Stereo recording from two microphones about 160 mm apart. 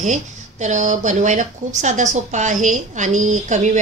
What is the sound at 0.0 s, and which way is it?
A woman's voice, 50° right (ahead or behind).